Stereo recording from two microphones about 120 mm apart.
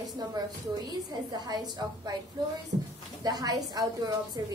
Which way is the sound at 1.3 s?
35° right (ahead or behind).